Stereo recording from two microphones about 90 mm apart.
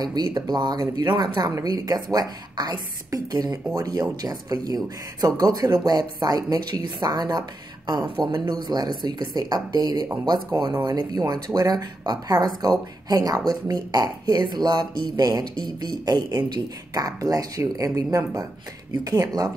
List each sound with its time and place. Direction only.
0.0 s speech: 50° right (ahead or behind)